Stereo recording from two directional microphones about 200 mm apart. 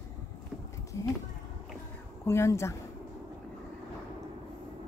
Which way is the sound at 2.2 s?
15° left (ahead or behind).